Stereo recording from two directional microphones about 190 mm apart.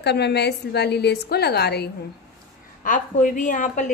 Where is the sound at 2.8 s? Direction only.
45° left (ahead or behind).